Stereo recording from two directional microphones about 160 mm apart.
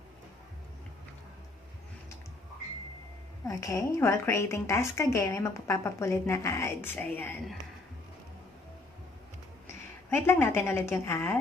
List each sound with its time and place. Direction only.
3.4 s a woman's voice: 20° left (ahead or behind)
10.0 s a woman's voice: 15° left (ahead or behind)